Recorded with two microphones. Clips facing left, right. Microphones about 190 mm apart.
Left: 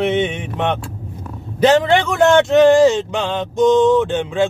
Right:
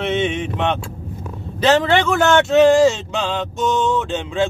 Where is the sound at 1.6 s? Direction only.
15° left (ahead or behind).